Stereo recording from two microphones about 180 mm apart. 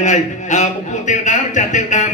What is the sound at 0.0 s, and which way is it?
A man's voice, 40° left (ahead or behind).